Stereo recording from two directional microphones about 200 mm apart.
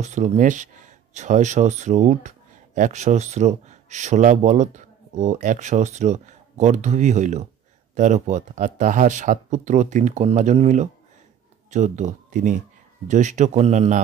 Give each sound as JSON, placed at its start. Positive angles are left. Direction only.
{"t": 0.0, "sound": "speech", "side_deg": -35}